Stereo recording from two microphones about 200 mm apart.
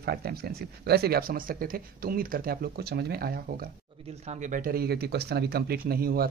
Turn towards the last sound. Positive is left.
turn(degrees=-50)  # may be behind; listen again after turning